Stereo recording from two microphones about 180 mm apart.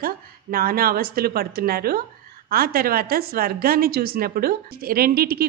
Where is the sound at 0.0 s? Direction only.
55° right (ahead or behind).